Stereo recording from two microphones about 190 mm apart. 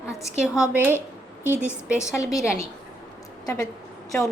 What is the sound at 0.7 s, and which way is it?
A woman's voice, 10° right (ahead or behind).